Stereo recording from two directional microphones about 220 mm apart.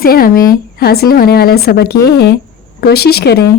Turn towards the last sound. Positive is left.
turn(degrees=45)  # may be behind; listen again after turning